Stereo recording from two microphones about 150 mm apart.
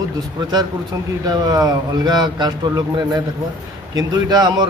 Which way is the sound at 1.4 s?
25° right (ahead or behind).